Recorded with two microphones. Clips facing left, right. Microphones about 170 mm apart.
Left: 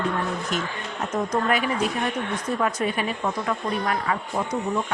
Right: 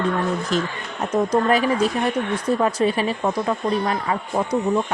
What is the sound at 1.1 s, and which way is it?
Speech, 35° right (ahead or behind).